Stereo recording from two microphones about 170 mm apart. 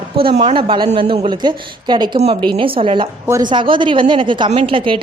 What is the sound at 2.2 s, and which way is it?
A woman's voice, 35° right (ahead or behind).